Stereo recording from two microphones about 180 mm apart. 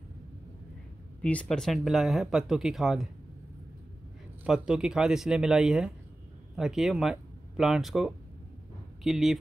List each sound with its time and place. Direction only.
1.2 s speech: 5° left (ahead or behind)
4.5 s speech: 5° right (ahead or behind)